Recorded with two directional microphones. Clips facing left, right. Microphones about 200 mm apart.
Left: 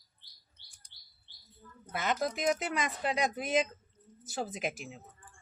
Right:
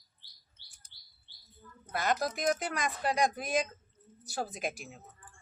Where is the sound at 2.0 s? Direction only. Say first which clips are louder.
Even; 20° left (ahead or behind).